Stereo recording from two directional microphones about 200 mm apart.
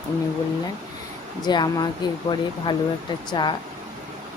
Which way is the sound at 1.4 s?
20° left (ahead or behind).